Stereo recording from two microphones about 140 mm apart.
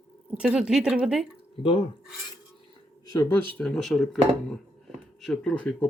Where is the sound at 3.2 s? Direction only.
15° left (ahead or behind).